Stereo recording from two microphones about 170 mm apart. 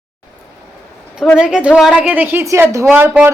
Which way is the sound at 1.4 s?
5° right (ahead or behind).